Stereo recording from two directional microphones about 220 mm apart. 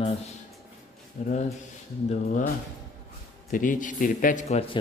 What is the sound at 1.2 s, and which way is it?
Speech, 35° left (ahead or behind).